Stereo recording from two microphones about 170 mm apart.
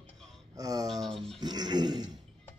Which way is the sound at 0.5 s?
20° right (ahead or behind).